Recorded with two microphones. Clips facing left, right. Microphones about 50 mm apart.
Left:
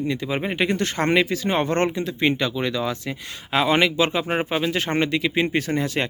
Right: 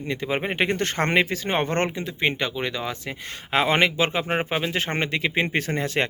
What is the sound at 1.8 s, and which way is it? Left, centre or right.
Speech, centre.